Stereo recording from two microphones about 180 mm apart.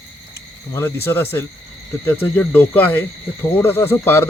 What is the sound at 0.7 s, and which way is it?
Speech, 15° left (ahead or behind).